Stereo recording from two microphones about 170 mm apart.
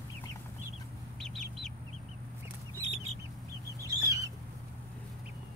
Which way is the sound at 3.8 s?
20° right (ahead or behind).